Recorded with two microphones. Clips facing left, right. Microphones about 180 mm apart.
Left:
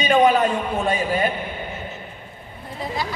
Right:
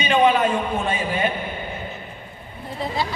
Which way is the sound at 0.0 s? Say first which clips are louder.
Left 1 dB; 40° left (ahead or behind).